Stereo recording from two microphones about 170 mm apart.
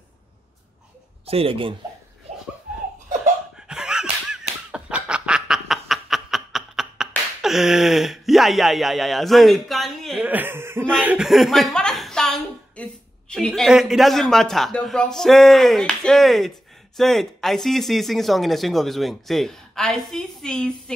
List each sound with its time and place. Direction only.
1.2 s speech: 35° right (ahead or behind)
3.6 s a sound: 5° right (ahead or behind)
10.3 s speech: 10° right (ahead or behind); by 20.9 s 5° left (ahead or behind)